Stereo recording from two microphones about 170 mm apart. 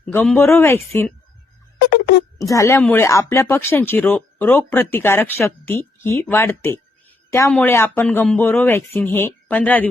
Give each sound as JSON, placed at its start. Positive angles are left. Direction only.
{"t": 0.0, "sound": "speech", "side_deg": 10}
{"t": 2.4, "sound": "speech", "side_deg": 20}